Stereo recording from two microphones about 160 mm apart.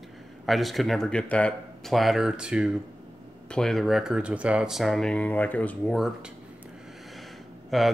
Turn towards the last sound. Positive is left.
turn(degrees=0)  # may be behind; listen again after turning